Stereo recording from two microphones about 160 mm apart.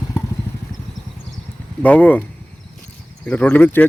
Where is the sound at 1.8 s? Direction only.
10° left (ahead or behind).